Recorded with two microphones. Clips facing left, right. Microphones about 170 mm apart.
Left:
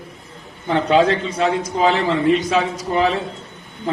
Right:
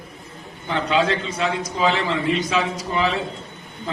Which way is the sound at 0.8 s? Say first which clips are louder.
Left 5 dB; 45° left (ahead or behind).